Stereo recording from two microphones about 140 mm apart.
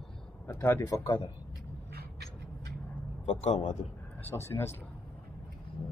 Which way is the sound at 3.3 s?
55° left (ahead or behind).